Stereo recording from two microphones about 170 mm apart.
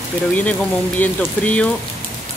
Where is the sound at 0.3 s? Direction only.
10° left (ahead or behind).